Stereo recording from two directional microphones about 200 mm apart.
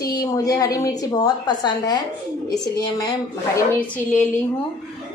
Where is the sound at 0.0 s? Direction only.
15° left (ahead or behind).